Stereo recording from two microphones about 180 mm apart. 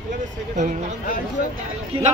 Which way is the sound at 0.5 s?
40° right (ahead or behind).